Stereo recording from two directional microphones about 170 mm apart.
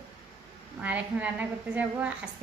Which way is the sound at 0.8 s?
10° right (ahead or behind).